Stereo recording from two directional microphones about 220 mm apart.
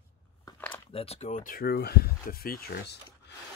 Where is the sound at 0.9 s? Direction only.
25° left (ahead or behind); by 2.9 s 45° left (ahead or behind).